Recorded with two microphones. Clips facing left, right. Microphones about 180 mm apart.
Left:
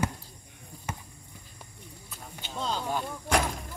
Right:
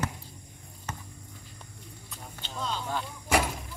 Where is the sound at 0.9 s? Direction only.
10° left (ahead or behind).